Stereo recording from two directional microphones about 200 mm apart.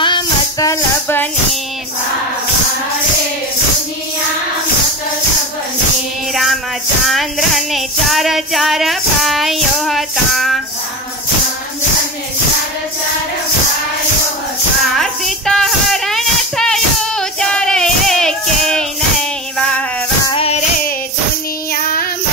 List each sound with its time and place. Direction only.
0.0 s music: 20° left (ahead or behind)
6.3 s music: centre (ahead or behind)
15.0 s a sound: centre (ahead or behind)
20.2 s child singing: 30° left (ahead or behind)
21.7 s child singing: 45° left (ahead or behind)